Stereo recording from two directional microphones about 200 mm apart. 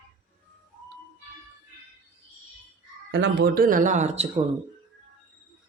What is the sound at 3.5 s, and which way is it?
Speech, 45° right (ahead or behind).